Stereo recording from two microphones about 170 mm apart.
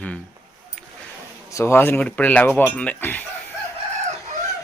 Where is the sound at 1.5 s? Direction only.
15° left (ahead or behind).